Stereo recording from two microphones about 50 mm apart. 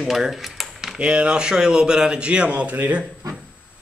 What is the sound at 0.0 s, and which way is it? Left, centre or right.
Speech, centre.